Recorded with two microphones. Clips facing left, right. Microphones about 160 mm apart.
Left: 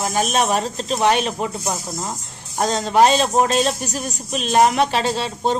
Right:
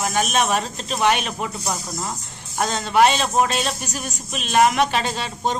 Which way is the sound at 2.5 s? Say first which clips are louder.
Left 2 dB; 35° left (ahead or behind).